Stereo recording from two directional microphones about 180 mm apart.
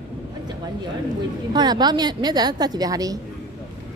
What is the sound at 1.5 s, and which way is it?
A woman's voice, 25° right (ahead or behind).